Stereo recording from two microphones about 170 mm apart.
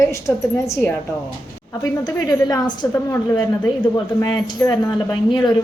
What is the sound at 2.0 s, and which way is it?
A woman's voice, 20° left (ahead or behind).